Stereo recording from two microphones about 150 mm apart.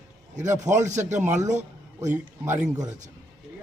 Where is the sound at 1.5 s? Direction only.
50° right (ahead or behind).